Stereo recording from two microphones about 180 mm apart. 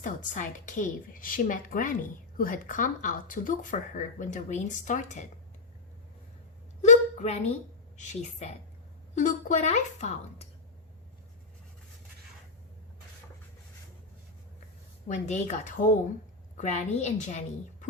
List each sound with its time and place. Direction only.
0.0 s speech: 45° left (ahead or behind)
6.8 s a sound: 40° left (ahead or behind)
7.9 s speech: 40° left (ahead or behind)
15.0 s speech: 40° left (ahead or behind)